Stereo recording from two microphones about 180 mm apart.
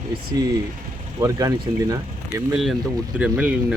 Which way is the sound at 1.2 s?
20° right (ahead or behind).